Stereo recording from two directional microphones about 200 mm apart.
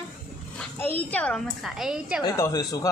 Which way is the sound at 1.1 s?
5° left (ahead or behind).